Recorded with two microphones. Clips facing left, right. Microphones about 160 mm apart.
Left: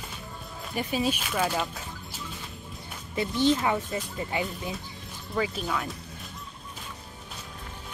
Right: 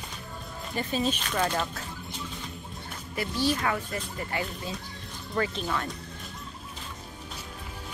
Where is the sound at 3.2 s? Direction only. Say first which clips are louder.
Left 4 dB; 20° left (ahead or behind).